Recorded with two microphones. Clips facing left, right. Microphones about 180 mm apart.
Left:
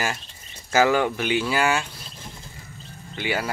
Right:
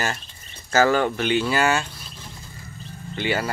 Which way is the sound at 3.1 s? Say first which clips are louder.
Right 2 dB; 10° left (ahead or behind).